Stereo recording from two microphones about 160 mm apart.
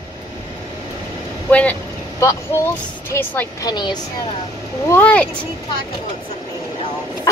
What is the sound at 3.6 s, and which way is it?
Speech, 30° left (ahead or behind).